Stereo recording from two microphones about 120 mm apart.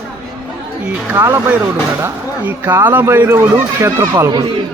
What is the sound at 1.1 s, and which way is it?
Speech, 30° right (ahead or behind).